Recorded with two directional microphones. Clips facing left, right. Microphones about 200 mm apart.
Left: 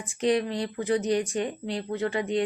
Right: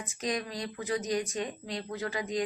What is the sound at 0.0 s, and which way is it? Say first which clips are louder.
Speech: left 9 dB; 30° left (ahead or behind).